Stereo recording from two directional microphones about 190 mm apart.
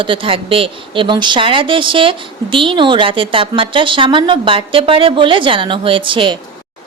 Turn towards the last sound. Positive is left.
turn(degrees=-25)  # may be behind; listen again after turning